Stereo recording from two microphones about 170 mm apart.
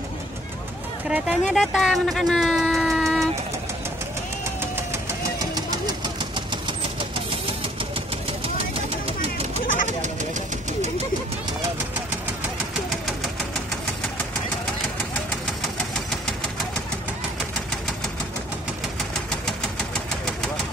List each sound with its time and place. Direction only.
1.0 s speech: 5° right (ahead or behind)
6.0 s engine: 25° right (ahead or behind)